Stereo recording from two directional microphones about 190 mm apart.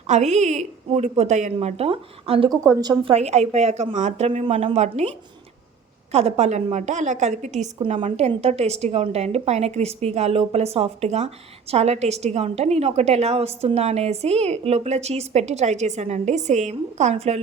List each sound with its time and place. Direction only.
0.1 s a woman's voice: 35° right (ahead or behind)
2.6 s a woman's voice: 20° right (ahead or behind); by 17.4 s 35° right (ahead or behind)